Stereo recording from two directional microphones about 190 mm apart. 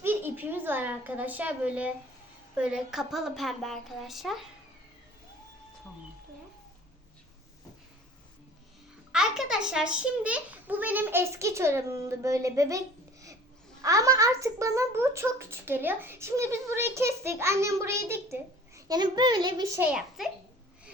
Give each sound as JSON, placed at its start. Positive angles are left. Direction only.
{"t": 0.0, "sound": "a woman's voice", "side_deg": -10}
{"t": 9.1, "sound": "a child's voice", "side_deg": -5}
{"t": 13.8, "sound": "a child's voice", "side_deg": -15}
{"t": 19.9, "sound": "speech", "side_deg": 0}